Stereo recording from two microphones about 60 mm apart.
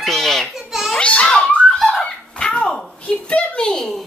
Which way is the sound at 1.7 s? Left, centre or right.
Centre.